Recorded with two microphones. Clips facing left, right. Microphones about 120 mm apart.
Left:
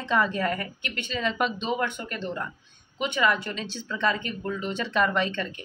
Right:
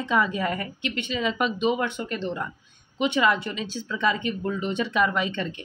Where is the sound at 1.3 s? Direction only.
5° right (ahead or behind).